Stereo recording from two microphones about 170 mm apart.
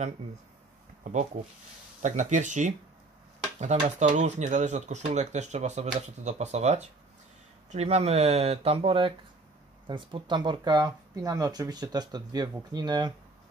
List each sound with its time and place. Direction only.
1.0 s speech: 45° right (ahead or behind)
3.8 s speech: 45° right (ahead or behind); by 13.1 s 25° right (ahead or behind)